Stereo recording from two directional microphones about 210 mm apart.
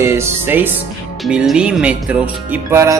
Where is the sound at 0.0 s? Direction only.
10° right (ahead or behind).